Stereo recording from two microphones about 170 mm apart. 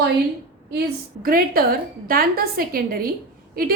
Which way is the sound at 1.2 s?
60° right (ahead or behind).